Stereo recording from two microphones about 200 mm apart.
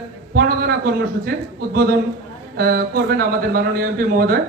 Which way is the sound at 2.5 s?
50° right (ahead or behind).